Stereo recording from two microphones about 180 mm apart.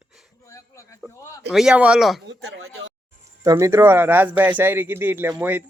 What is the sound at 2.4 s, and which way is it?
Speech, 90° right.